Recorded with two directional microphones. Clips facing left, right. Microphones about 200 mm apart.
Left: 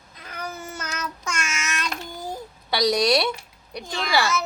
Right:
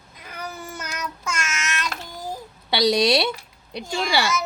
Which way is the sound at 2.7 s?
25° right (ahead or behind).